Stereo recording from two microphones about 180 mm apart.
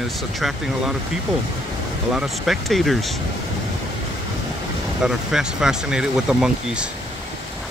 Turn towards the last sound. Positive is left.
turn(degrees=-5)  # may be behind; listen again after turning